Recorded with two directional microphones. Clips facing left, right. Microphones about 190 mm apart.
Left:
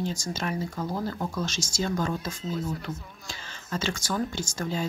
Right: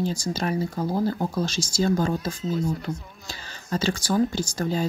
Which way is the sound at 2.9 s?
15° right (ahead or behind).